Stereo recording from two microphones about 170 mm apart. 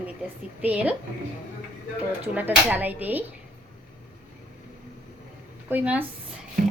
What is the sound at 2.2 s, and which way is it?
Speech, 10° right (ahead or behind).